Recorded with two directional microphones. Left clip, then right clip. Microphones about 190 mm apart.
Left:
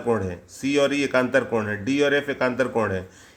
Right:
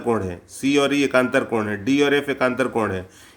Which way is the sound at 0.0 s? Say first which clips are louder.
Right 1 dB; 20° right (ahead or behind).